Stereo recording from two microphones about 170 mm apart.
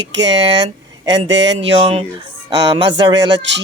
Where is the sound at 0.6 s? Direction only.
25° right (ahead or behind).